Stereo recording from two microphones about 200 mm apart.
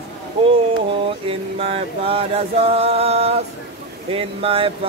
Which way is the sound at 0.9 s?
30° right (ahead or behind).